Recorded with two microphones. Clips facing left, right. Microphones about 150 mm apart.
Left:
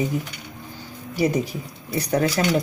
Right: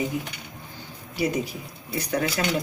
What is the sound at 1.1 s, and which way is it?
Speech, 45° left (ahead or behind).